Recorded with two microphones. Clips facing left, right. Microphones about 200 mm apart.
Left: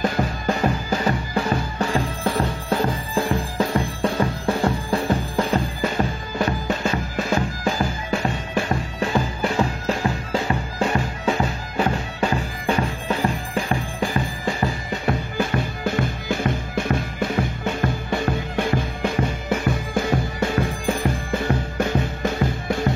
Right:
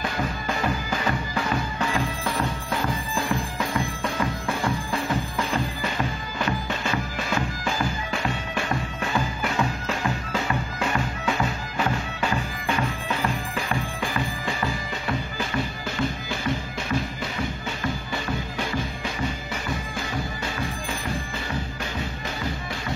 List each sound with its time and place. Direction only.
0.0 s music: 40° left (ahead or behind)
15.0 s music: 55° left (ahead or behind)